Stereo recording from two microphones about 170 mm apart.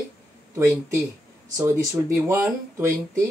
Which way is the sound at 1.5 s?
15° right (ahead or behind).